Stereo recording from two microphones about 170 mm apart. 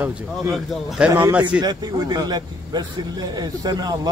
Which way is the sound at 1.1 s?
15° right (ahead or behind).